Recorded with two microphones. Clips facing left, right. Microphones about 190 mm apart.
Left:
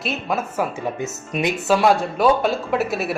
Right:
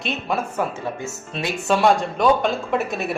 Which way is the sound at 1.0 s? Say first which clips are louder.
Left 4 dB; 20° left (ahead or behind).